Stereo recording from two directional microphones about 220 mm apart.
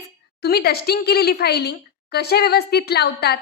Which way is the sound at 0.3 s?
45° left (ahead or behind).